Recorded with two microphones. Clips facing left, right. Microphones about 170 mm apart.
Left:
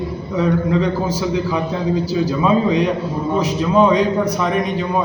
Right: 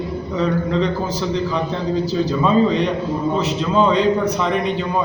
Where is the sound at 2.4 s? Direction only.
10° left (ahead or behind).